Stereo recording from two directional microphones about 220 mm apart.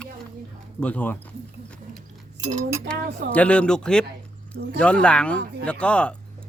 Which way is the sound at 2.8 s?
5° left (ahead or behind).